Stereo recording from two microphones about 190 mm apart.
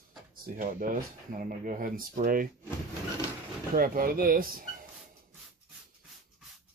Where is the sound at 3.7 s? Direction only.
50° right (ahead or behind).